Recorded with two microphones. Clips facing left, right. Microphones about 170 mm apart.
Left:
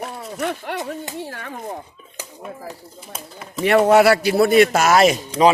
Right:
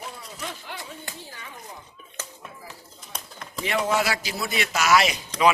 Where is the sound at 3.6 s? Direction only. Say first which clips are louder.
Left 12 dB; 65° left (ahead or behind); by 5.1 s 50° left (ahead or behind).